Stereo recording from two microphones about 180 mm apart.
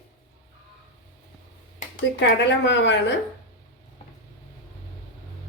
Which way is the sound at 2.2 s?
75° left (ahead or behind).